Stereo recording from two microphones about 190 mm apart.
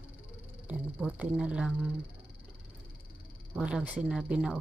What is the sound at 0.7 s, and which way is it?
Speech, 5° right (ahead or behind).